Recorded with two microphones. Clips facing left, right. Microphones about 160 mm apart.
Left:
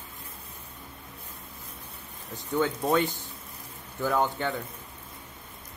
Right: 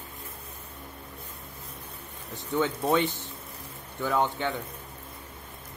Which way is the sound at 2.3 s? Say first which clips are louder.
Even; centre (ahead or behind).